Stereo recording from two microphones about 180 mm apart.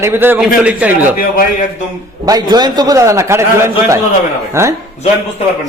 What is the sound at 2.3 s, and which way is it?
A man's voice, 20° right (ahead or behind).